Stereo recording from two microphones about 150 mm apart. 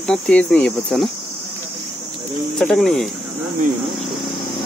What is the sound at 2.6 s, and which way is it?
Speech, centre (ahead or behind).